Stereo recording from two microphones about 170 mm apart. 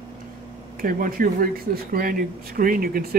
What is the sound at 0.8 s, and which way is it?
A man's voice, 55° right (ahead or behind).